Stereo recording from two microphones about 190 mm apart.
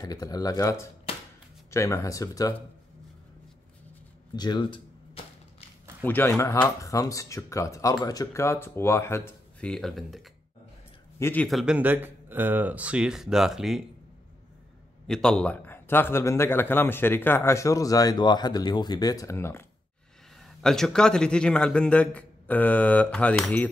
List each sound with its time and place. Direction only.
0.0 s speech: 20° left (ahead or behind)
1.1 s a sound: 30° left (ahead or behind)
1.7 s a man's voice: 15° left (ahead or behind)
4.4 s cap gun: 25° left (ahead or behind)
6.0 s a man's voice: 10° left (ahead or behind)
11.1 s speech: 10° left (ahead or behind)
11.4 s a man's voice: centre (ahead or behind)
15.0 s a man's voice: 5° left (ahead or behind)
20.3 s a man's voice: centre (ahead or behind)